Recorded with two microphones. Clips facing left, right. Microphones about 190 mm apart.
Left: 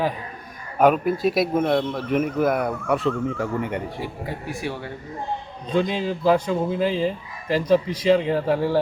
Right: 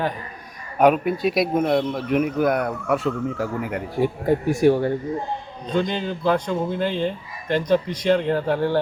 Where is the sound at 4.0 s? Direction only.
45° right (ahead or behind).